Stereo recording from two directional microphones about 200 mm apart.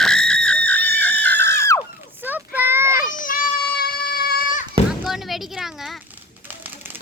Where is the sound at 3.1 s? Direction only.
40° left (ahead or behind).